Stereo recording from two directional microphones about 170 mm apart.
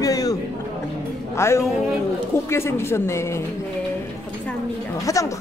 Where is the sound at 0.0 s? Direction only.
20° left (ahead or behind).